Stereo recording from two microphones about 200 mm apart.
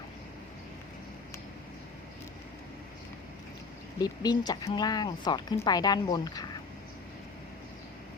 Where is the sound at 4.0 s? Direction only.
20° left (ahead or behind).